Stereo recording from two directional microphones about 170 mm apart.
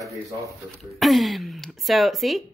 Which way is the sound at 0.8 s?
Centre (ahead or behind).